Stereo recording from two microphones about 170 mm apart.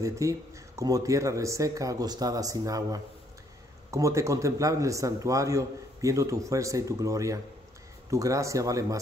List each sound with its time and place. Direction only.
0.0 s a man's voice: 20° right (ahead or behind)